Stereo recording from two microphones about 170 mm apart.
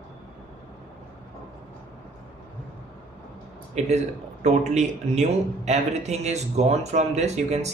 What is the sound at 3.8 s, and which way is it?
A man's voice, 40° right (ahead or behind).